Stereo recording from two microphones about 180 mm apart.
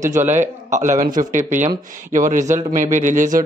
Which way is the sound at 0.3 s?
40° right (ahead or behind).